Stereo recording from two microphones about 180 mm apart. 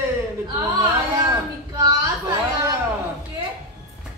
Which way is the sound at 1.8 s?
20° right (ahead or behind).